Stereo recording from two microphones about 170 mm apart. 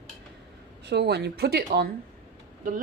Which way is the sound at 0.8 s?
80° right.